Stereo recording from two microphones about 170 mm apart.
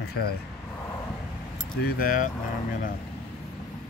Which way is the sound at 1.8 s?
55° left (ahead or behind).